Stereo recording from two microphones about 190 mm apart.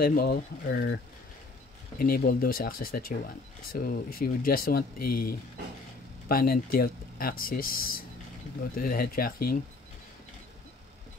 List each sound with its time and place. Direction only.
0.0 s speech: 50° left (ahead or behind)
2.0 s speech: 50° left (ahead or behind)